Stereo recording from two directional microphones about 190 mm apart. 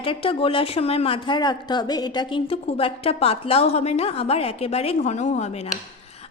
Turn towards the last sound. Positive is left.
turn(degrees=35)  # may be behind; listen again after turning